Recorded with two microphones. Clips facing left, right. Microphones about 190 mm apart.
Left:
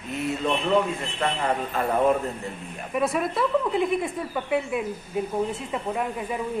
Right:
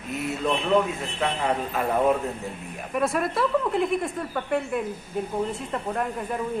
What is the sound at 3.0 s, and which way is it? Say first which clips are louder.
A man's voice: even; centre (ahead or behind).